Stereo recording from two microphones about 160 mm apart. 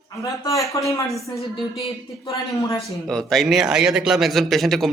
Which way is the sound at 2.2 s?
20° left (ahead or behind).